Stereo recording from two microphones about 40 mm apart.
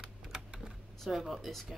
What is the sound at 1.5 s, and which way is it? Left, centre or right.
Speech, centre.